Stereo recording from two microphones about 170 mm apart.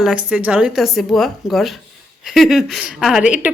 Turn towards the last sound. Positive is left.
turn(degrees=-5)  # may be behind; listen again after turning